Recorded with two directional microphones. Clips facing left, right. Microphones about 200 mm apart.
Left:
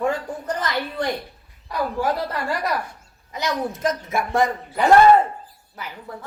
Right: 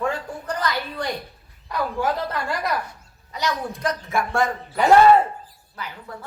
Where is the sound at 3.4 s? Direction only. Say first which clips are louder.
Left 2 dB; 20° left (ahead or behind).